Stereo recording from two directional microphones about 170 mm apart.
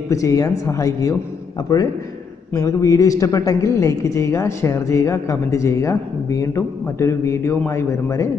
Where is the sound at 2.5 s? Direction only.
20° left (ahead or behind).